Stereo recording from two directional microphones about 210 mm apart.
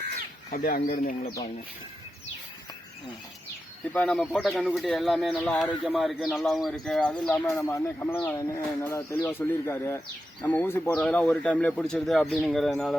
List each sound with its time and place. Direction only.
0.5 s speech: 45° left (ahead or behind)
3.9 s speech: 5° left (ahead or behind)